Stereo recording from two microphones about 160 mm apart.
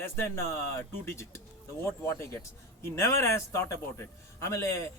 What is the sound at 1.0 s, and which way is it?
Speech, 15° left (ahead or behind).